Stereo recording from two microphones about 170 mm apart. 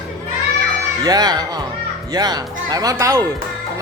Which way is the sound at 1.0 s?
25° right (ahead or behind).